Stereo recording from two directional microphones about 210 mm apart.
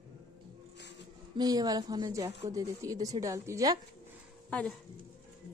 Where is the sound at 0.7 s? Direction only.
55° left (ahead or behind).